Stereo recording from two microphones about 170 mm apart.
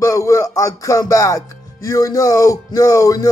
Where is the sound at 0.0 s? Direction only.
20° left (ahead or behind).